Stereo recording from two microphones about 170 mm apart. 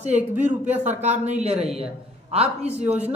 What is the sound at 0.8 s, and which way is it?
Speech, 40° right (ahead or behind).